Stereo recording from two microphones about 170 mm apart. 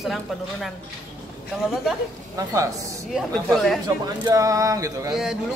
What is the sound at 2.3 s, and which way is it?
Speech, 20° right (ahead or behind).